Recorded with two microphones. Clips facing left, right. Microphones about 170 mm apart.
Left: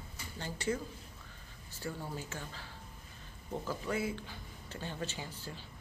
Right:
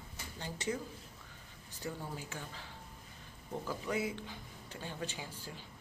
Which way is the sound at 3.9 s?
20° right (ahead or behind).